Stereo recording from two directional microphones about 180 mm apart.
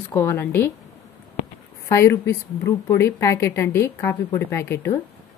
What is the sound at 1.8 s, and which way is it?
A woman's voice, 15° left (ahead or behind).